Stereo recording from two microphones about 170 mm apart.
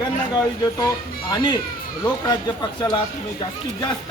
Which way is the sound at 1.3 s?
25° left (ahead or behind).